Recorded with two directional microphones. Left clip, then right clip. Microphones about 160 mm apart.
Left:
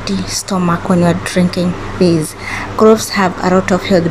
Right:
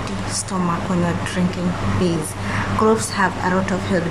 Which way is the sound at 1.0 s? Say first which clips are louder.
Left 8 dB; 30° left (ahead or behind).